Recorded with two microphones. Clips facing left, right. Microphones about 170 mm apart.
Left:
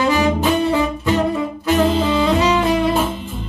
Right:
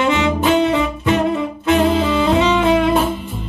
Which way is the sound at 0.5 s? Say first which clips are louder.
Right 2 dB; 75° right (ahead or behind).